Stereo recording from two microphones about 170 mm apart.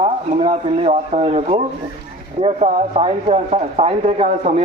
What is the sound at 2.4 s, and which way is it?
Speech, 40° right (ahead or behind).